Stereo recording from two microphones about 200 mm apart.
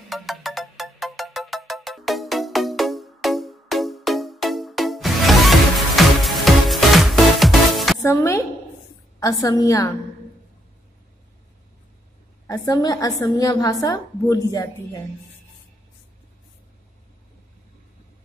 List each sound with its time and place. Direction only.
0.1 s ringtone: centre (ahead or behind)
8.0 s music: 15° left (ahead or behind)
9.2 s a woman's voice: 15° left (ahead or behind)
12.4 s a woman's voice: 20° left (ahead or behind)